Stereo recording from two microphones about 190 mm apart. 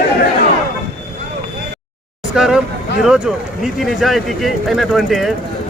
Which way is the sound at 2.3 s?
5° right (ahead or behind).